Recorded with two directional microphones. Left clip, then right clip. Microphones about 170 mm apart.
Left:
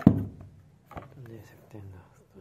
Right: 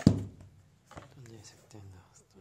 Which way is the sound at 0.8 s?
10° right (ahead or behind).